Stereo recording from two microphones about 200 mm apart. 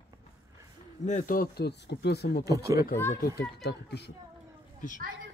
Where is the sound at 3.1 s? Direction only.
55° left (ahead or behind).